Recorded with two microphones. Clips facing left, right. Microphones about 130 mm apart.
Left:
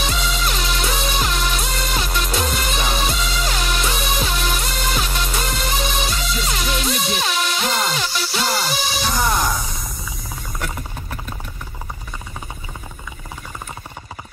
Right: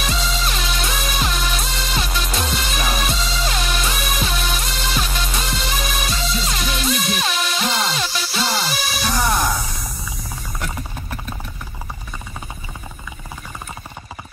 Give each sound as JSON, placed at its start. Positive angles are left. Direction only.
{"t": 0.0, "sound": "music", "side_deg": 0}